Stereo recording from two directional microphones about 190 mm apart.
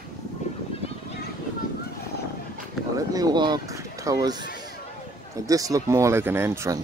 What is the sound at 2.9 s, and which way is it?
Speech, 20° right (ahead or behind).